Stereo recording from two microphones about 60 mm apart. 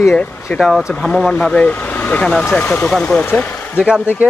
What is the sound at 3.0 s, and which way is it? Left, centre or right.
Speech, left.